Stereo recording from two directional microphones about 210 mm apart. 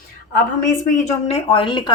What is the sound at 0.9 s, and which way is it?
Speech, 30° left (ahead or behind).